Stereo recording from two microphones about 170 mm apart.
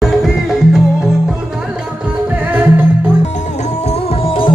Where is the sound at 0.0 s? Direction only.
Centre (ahead or behind).